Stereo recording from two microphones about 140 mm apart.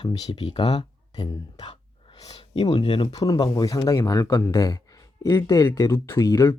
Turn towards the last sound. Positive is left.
turn(degrees=20)  # may be behind; listen again after turning